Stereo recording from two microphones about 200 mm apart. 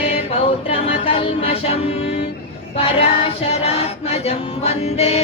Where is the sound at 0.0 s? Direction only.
30° left (ahead or behind).